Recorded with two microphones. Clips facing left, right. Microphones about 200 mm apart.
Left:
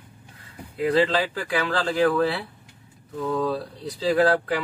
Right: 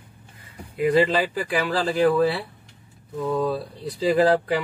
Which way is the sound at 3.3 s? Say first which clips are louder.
Right 1 dB; 15° right (ahead or behind).